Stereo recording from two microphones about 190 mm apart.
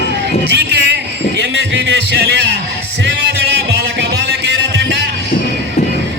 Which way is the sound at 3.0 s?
60° right (ahead or behind).